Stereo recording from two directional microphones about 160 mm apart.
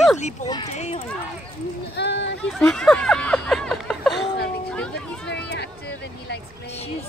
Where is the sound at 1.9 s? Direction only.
90° left.